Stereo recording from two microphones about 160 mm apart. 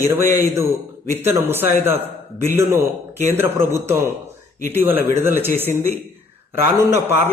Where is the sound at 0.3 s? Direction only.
15° right (ahead or behind).